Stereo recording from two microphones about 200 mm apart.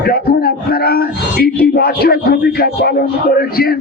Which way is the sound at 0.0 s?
50° left (ahead or behind).